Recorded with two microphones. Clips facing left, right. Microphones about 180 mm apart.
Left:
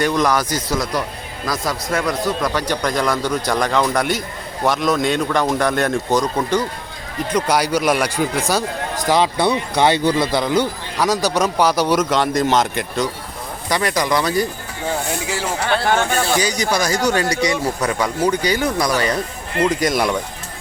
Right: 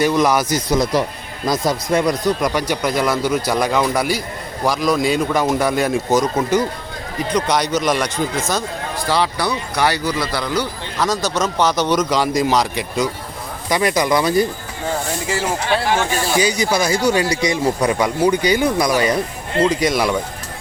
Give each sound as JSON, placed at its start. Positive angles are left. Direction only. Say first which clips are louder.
{"t": 0.0, "sound": "speech", "louder": "right 2 dB", "side_deg": -10}
{"t": 1.5, "sound": "a man's voice", "louder": "right 4 dB", "side_deg": -20}
{"t": 7.3, "sound": "speech", "louder": "left 1 dB", "side_deg": 5}
{"t": 10.9, "sound": "speech", "louder": "left 1 dB", "side_deg": 10}
{"t": 13.7, "sound": "speech", "louder": "right 2 dB", "side_deg": -15}
{"t": 15.3, "sound": "a man's voice", "louder": "right 6 dB", "side_deg": 0}
{"t": 15.6, "sound": "speech", "louder": "left 3 dB", "side_deg": 60}
{"t": 16.2, "sound": "speech", "louder": "right 1 dB", "side_deg": -10}
{"t": 17.2, "sound": "speech", "louder": "even", "side_deg": 35}
{"t": 17.5, "sound": "speech", "louder": "right 3 dB", "side_deg": -15}
{"t": 19.6, "sound": "a man's voice", "louder": "even", "side_deg": 0}